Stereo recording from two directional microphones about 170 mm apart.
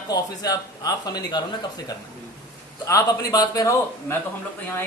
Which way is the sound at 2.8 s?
20° left (ahead or behind).